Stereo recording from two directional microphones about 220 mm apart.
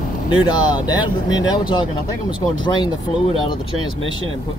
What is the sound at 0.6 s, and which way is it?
Speech, 20° left (ahead or behind).